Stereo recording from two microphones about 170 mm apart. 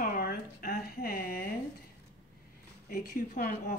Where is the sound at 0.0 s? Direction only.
60° left (ahead or behind).